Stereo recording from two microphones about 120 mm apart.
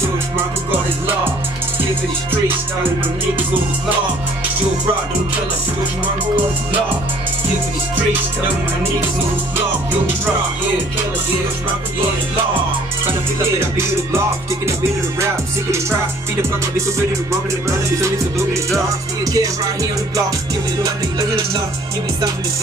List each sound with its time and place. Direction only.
13.6 s music: 20° right (ahead or behind)
17.3 s music: 25° right (ahead or behind)